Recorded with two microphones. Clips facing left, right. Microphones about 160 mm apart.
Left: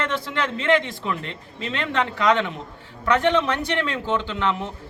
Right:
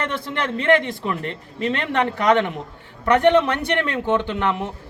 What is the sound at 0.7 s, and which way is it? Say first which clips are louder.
A man's voice: right 3 dB; 55° right (ahead or behind).